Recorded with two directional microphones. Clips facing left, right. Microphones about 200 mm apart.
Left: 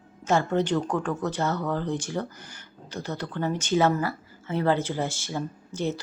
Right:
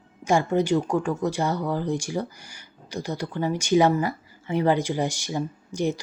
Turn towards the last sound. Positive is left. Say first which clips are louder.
# right 3 dB
turn(degrees=-15)  # may be behind; listen again after turning